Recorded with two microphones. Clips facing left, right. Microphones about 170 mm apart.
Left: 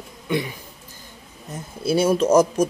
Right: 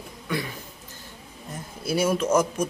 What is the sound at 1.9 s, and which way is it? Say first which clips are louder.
Speech: left 5 dB; 30° left (ahead or behind).